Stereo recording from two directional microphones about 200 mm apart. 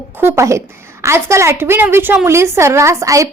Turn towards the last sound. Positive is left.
turn(degrees=-15)  # may be behind; listen again after turning